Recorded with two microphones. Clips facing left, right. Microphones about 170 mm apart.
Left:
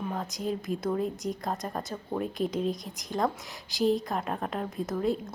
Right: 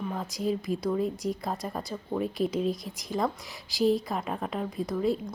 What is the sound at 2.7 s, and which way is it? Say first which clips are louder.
Speech: right 1 dB; 40° left (ahead or behind).